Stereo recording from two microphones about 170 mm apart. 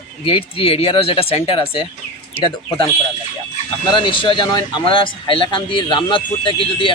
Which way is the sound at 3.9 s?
30° left (ahead or behind).